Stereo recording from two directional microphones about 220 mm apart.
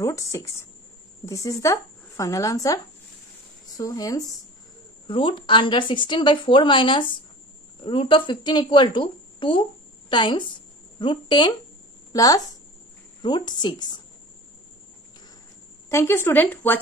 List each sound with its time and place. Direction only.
0.0 s a woman's voice: 15° left (ahead or behind)
15.9 s speech: 10° left (ahead or behind)